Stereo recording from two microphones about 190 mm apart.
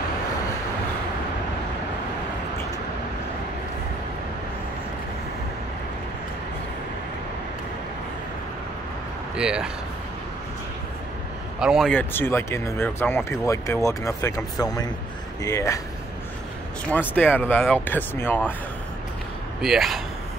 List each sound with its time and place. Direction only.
9.4 s speech: 5° right (ahead or behind)
11.6 s speech: centre (ahead or behind)
11.9 s speech: 10° left (ahead or behind)
17.1 s speech: 10° left (ahead or behind)
19.6 s speech: centre (ahead or behind)